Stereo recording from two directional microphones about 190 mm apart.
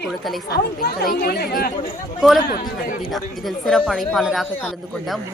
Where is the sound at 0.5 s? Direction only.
55° left (ahead or behind).